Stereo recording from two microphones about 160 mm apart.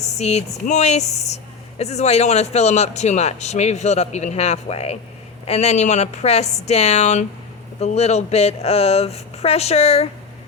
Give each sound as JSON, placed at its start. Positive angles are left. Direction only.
{"t": 0.0, "sound": "speech", "side_deg": 45}